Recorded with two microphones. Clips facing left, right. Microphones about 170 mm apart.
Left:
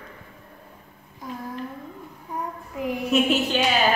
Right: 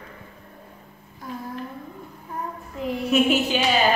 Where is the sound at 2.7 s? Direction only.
15° left (ahead or behind).